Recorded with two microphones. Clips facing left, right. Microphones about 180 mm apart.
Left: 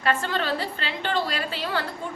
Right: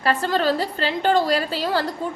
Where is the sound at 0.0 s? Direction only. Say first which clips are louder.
Right 5 dB; 35° right (ahead or behind).